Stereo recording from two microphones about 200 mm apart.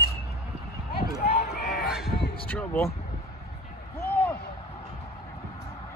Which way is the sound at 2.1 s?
55° left (ahead or behind).